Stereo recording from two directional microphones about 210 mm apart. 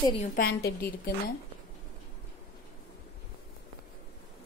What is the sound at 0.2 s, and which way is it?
Speech, 45° left (ahead or behind).